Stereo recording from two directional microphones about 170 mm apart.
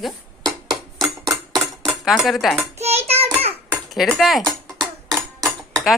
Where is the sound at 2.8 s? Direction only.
40° right (ahead or behind).